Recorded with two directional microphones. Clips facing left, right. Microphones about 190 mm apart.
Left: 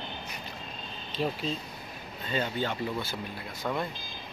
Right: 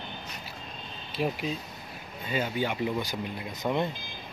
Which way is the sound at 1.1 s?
10° right (ahead or behind).